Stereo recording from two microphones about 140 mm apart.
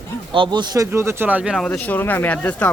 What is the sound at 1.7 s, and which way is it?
Speech, 10° left (ahead or behind).